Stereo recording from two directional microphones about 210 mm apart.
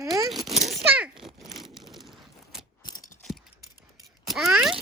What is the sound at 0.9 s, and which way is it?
Crumpling, 5° right (ahead or behind).